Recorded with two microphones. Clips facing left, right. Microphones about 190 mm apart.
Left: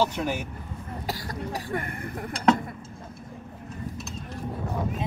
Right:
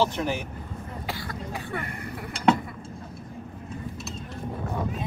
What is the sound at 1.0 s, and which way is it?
Cough, 40° left (ahead or behind).